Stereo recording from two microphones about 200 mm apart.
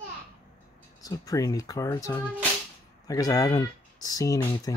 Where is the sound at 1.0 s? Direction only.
20° left (ahead or behind).